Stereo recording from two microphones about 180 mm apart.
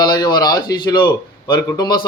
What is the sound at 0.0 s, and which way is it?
A man's voice, 20° left (ahead or behind).